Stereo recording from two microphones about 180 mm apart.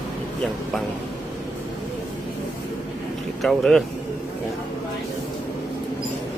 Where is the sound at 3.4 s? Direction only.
Centre (ahead or behind).